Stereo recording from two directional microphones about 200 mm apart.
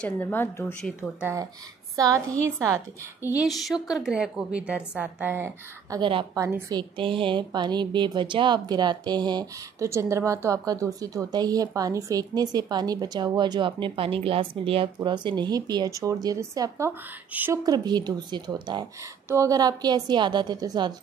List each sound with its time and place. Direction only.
0.0 s a woman's voice: 10° left (ahead or behind)
1.2 s a woman's voice: 15° right (ahead or behind)
3.4 s a woman's voice: centre (ahead or behind)
5.9 s a woman's voice: 25° right (ahead or behind)